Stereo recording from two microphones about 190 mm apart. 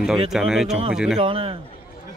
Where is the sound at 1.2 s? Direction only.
30° right (ahead or behind).